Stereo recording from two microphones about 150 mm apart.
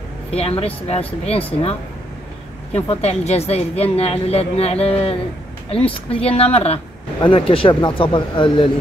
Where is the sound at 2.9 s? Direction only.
45° left (ahead or behind).